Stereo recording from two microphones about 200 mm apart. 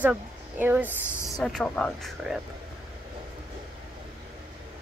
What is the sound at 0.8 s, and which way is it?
Speech, 15° left (ahead or behind).